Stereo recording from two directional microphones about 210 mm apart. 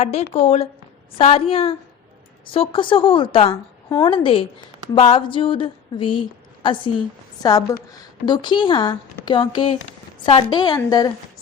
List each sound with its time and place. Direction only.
0.0 s a woman's voice: 30° left (ahead or behind)